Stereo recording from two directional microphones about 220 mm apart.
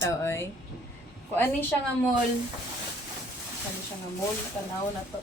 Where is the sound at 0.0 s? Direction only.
10° left (ahead or behind).